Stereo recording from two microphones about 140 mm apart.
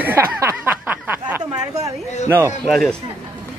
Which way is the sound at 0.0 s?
15° right (ahead or behind).